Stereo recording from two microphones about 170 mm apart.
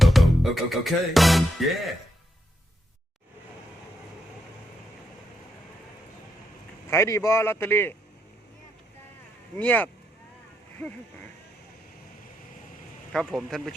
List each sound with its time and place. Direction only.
0.0 s music: centre (ahead or behind)
6.9 s a man's voice: 15° left (ahead or behind)
9.6 s a man's voice: 10° left (ahead or behind)
13.1 s speech: centre (ahead or behind)